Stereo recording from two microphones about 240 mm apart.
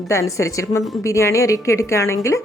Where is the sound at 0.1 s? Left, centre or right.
Centre.